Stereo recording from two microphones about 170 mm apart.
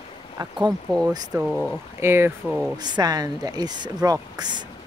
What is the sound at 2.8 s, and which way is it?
Speech, 25° right (ahead or behind).